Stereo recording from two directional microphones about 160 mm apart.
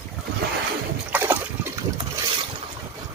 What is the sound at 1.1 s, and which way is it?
Trickle, 10° right (ahead or behind).